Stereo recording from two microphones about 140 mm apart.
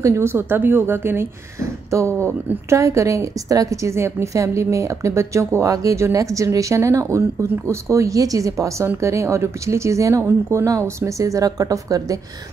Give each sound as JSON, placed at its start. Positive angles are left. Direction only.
{"t": 0.0, "sound": "a woman's voice", "side_deg": -20}